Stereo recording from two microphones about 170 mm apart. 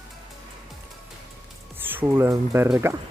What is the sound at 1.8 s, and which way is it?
Speech, 10° right (ahead or behind).